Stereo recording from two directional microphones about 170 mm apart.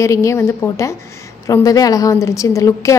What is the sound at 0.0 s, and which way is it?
A woman's voice, 15° left (ahead or behind).